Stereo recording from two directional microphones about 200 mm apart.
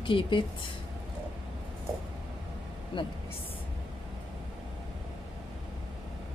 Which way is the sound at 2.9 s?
25° left (ahead or behind).